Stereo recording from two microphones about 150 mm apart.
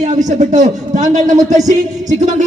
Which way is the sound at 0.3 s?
55° right (ahead or behind).